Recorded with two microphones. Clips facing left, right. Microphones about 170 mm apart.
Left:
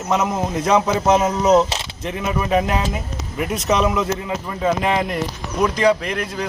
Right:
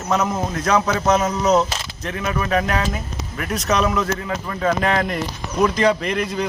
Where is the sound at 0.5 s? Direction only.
25° left (ahead or behind).